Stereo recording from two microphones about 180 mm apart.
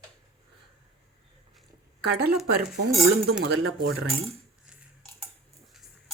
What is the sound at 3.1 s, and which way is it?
Speech, 65° right (ahead or behind).